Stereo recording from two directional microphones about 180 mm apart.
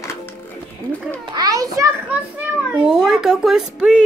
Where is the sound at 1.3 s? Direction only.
20° right (ahead or behind).